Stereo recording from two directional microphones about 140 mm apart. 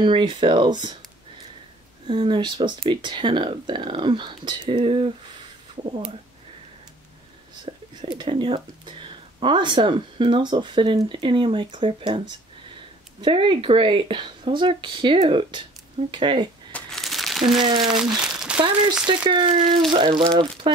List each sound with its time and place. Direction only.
0.0 s speech: 35° right (ahead or behind)
2.0 s speech: 35° right (ahead or behind)
7.9 s speech: 35° right (ahead or behind)
16.7 s crumpling: centre (ahead or behind)
17.8 s speech: 5° right (ahead or behind)
19.2 s speech: 35° right (ahead or behind)